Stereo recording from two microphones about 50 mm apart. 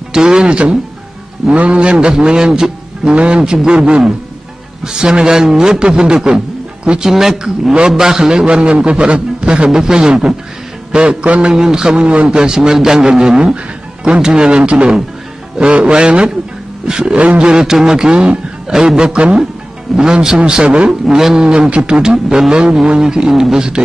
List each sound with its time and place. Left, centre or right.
0.1 s a man's voice: centre
11.5 s a man's voice: centre
17.5 s a man's voice: centre
21.0 s speech: centre